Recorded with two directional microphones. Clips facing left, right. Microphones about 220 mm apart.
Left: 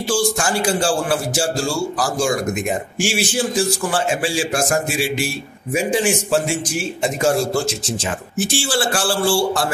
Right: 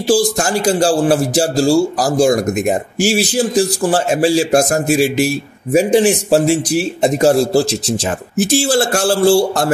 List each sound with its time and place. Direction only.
0.0 s speech: 35° right (ahead or behind)